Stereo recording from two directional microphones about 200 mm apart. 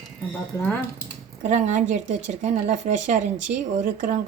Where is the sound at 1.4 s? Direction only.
35° right (ahead or behind).